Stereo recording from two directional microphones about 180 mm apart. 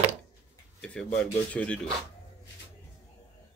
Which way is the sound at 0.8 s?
5° left (ahead or behind).